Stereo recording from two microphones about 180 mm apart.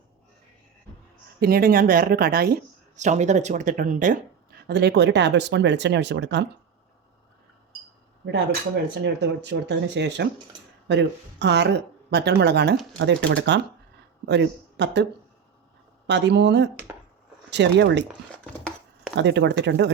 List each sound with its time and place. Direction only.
1.4 s speech: 55° right (ahead or behind)
2.9 s speech: 40° right (ahead or behind); by 6.4 s 75° right (ahead or behind)
9.2 s speech: 75° right (ahead or behind)
16.0 s speech: 75° right (ahead or behind)
18.3 s chopping: 5° left (ahead or behind)
19.1 s speech: 80° right